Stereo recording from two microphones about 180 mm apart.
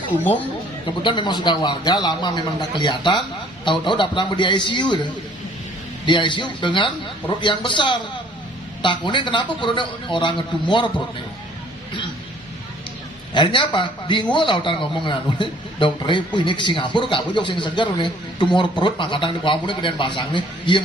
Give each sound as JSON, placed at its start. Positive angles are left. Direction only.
{"t": 1.0, "sound": "a man's voice", "side_deg": 25}
{"t": 13.3, "sound": "a man's voice", "side_deg": 25}